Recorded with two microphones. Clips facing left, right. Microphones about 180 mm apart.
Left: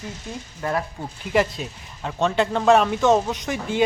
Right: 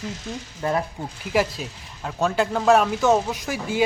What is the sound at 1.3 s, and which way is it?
Speech, 5° right (ahead or behind).